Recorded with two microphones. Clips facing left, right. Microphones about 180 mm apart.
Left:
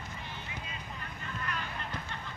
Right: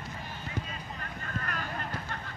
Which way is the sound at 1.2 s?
45° right (ahead or behind).